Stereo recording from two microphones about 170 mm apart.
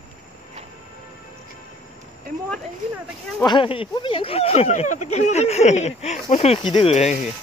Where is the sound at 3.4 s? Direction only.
30° left (ahead or behind).